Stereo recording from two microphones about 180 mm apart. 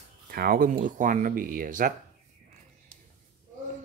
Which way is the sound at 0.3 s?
55° right (ahead or behind).